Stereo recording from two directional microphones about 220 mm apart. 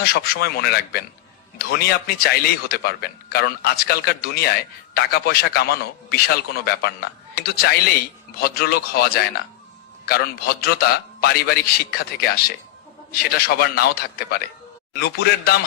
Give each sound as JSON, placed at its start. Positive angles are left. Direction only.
{"t": 0.0, "sound": "a man's voice", "side_deg": 45}